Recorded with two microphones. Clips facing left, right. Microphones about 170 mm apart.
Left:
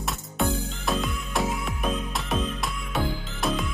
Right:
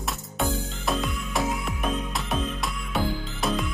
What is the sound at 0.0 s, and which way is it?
Music, centre (ahead or behind).